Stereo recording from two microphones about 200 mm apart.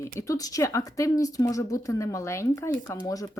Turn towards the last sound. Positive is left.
turn(degrees=15)  # may be behind; listen again after turning